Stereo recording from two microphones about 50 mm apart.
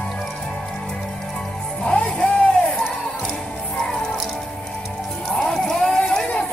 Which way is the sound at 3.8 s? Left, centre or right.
Centre.